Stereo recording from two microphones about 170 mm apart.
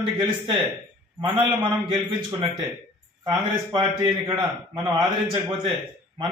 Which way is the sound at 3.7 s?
25° right (ahead or behind).